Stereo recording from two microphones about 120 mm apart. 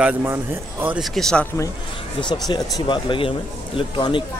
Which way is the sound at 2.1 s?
35° left (ahead or behind).